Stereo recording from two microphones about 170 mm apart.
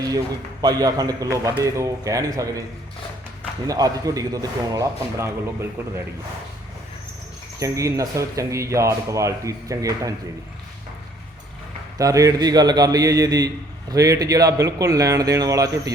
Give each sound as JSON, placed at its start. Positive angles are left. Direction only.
{"t": 0.6, "sound": "speech", "side_deg": -20}
{"t": 3.7, "sound": "speech", "side_deg": -20}
{"t": 7.6, "sound": "speech", "side_deg": -20}
{"t": 11.9, "sound": "speech", "side_deg": -20}